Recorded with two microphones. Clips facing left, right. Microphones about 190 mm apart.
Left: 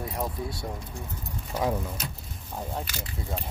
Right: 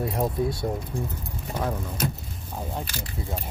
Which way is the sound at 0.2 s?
25° right (ahead or behind).